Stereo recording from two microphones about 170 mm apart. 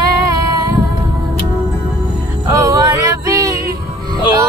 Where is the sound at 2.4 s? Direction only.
20° right (ahead or behind).